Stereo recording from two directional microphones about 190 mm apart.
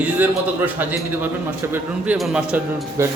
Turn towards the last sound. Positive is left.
turn(degrees=-5)  # may be behind; listen again after turning